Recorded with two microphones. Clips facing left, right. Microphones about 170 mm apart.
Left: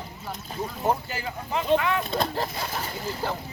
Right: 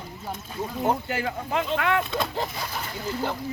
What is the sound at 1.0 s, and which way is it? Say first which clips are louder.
Speech: right 5 dB; 65° right (ahead or behind).